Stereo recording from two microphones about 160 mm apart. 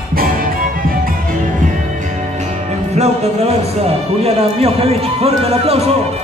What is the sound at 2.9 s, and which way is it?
Music, 40° right (ahead or behind).